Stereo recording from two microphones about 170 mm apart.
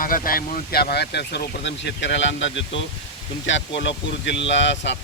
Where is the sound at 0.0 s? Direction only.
55° left (ahead or behind).